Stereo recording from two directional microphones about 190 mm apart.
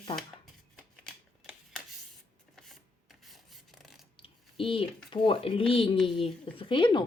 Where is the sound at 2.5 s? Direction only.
Centre (ahead or behind).